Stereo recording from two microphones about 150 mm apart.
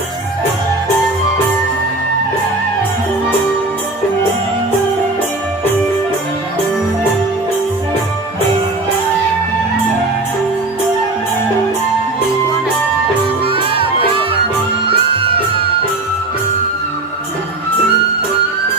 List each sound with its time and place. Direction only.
13.4 s music: 35° right (ahead or behind)